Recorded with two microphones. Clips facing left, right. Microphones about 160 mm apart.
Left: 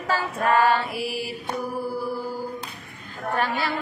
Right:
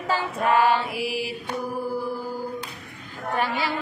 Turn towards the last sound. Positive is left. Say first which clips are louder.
# even
turn(degrees=-15)  # may be behind; listen again after turning